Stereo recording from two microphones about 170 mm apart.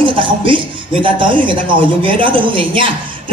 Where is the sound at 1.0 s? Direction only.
30° right (ahead or behind).